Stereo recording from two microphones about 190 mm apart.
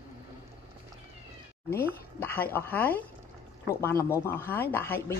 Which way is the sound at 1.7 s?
10° left (ahead or behind).